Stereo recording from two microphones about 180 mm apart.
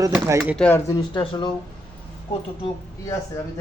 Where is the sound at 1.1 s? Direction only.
25° left (ahead or behind).